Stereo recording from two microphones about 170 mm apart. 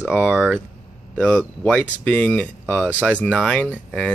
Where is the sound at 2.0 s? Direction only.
10° left (ahead or behind).